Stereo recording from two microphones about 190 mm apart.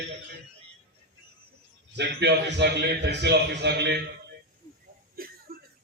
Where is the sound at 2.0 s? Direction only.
65° right (ahead or behind).